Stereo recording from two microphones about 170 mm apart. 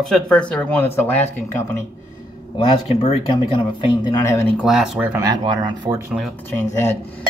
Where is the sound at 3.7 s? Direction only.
20° left (ahead or behind).